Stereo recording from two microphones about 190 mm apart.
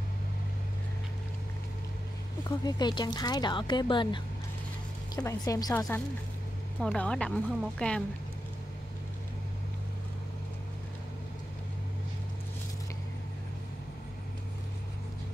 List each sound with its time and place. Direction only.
2.4 s speech: 20° left (ahead or behind)
6.8 s speech: 5° left (ahead or behind)